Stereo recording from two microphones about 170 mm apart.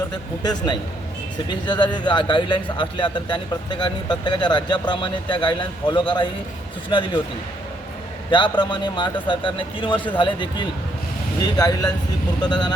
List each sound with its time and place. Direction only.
0.1 s speech: 25° left (ahead or behind)
8.3 s speech: 25° left (ahead or behind)